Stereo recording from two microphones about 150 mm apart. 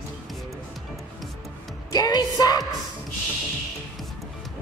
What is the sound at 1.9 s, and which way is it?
Music, 25° left (ahead or behind).